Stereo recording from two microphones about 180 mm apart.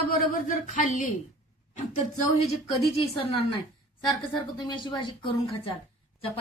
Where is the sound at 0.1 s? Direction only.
50° left (ahead or behind).